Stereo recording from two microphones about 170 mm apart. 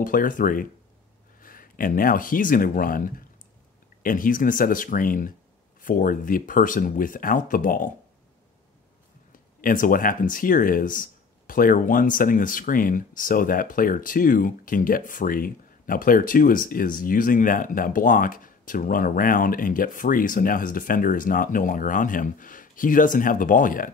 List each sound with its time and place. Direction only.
0.0 s speech: 50° left (ahead or behind)
9.3 s speech: 55° left (ahead or behind)